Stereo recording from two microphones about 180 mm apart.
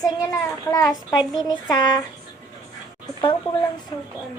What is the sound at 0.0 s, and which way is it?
A child's voice, 20° left (ahead or behind).